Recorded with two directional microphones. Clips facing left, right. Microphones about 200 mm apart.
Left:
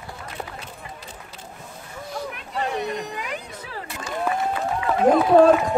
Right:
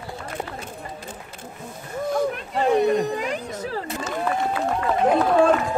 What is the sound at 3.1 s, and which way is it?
Music, 45° right (ahead or behind).